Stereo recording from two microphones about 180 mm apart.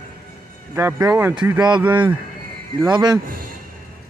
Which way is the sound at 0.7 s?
15° right (ahead or behind).